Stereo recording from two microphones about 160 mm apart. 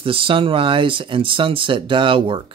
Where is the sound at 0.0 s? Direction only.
35° right (ahead or behind).